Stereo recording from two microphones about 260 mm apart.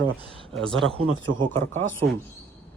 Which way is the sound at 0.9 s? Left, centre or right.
Centre.